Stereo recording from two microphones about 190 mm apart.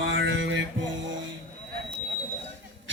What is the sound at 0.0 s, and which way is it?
Music, 75° right (ahead or behind).